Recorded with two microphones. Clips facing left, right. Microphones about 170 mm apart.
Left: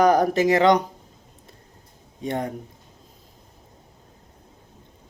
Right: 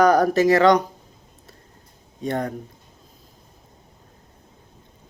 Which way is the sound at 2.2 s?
20° left (ahead or behind).